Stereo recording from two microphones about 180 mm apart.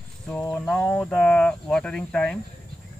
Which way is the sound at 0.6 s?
5° left (ahead or behind).